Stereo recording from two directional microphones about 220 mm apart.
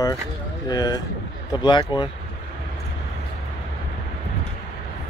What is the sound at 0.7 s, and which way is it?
Speech, 20° left (ahead or behind).